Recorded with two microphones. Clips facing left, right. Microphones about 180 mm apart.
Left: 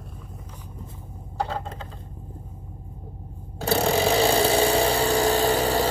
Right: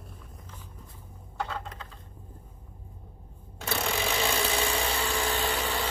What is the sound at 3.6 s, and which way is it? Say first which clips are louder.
Vehicle: left 10 dB; 35° left (ahead or behind).